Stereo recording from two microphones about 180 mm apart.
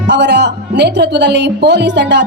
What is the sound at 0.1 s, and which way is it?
Speech, 70° right (ahead or behind).